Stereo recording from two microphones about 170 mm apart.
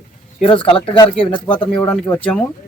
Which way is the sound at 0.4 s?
30° left (ahead or behind).